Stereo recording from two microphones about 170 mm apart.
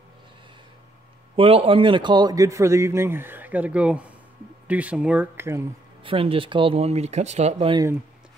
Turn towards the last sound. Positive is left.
turn(degrees=-35)  # may be behind; listen again after turning